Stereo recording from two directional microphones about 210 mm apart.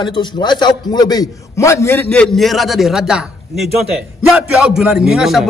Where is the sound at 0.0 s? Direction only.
20° left (ahead or behind).